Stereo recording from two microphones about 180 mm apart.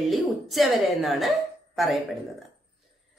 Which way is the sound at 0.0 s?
Centre (ahead or behind).